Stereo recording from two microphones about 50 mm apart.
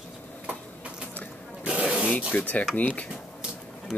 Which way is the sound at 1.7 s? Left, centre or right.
Right.